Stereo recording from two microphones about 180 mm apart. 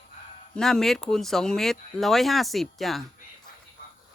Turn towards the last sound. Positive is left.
turn(degrees=0)  # may be behind; listen again after turning